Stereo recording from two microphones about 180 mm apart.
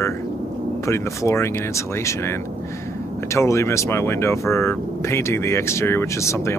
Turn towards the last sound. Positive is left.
turn(degrees=15)  # may be behind; listen again after turning